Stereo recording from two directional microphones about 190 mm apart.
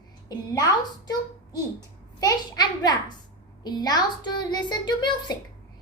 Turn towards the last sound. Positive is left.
turn(degrees=25)  # may be behind; listen again after turning